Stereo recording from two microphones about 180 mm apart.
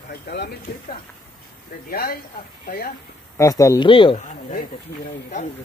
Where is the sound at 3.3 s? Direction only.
15° left (ahead or behind).